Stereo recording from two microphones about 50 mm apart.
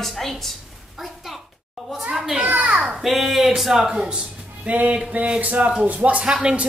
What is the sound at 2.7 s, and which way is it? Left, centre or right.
Speech, centre.